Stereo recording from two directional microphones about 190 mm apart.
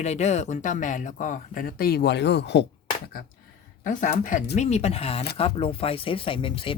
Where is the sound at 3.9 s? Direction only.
45° left (ahead or behind); by 6.8 s 30° left (ahead or behind).